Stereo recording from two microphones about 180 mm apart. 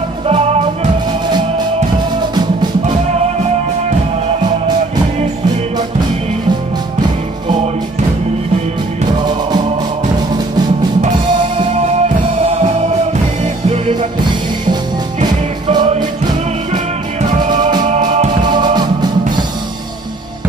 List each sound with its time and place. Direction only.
12.4 s music: 35° right (ahead or behind)
15.1 s music: 25° right (ahead or behind)
17.5 s music: 25° right (ahead or behind)